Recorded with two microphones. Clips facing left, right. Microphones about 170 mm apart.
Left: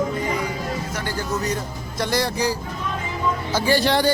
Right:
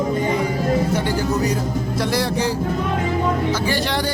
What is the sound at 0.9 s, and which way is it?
Speech, 30° right (ahead or behind).